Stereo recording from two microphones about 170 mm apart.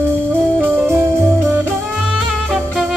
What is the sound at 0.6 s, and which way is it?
Music, 15° right (ahead or behind).